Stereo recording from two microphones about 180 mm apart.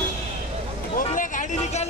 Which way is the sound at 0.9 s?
45° left (ahead or behind).